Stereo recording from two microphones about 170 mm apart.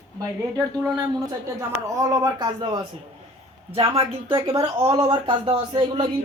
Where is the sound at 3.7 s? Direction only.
35° right (ahead or behind).